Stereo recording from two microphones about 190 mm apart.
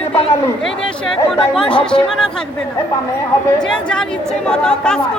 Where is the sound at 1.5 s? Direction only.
5° left (ahead or behind).